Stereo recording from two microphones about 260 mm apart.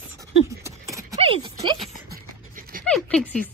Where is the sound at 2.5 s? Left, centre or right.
Right.